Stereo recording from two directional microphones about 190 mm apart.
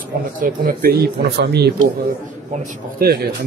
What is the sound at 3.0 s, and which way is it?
Speech, 55° right (ahead or behind).